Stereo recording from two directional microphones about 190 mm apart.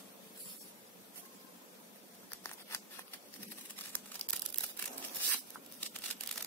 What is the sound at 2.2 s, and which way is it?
Scissors, 15° left (ahead or behind).